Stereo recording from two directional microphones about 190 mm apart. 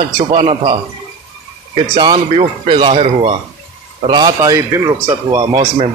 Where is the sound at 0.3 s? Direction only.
30° right (ahead or behind).